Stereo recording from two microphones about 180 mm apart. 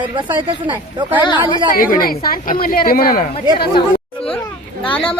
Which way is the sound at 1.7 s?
50° left (ahead or behind).